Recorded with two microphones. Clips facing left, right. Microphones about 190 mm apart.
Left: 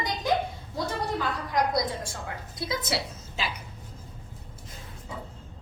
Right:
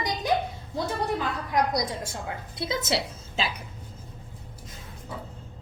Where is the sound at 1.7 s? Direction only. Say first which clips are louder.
Even; 20° right (ahead or behind).